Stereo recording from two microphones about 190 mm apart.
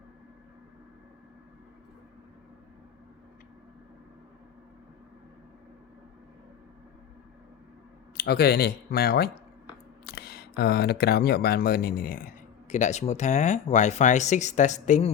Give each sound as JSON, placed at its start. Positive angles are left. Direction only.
{"t": 8.1, "sound": "speech", "side_deg": 55}